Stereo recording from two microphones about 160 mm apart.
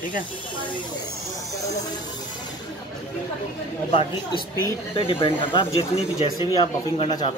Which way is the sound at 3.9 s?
35° left (ahead or behind).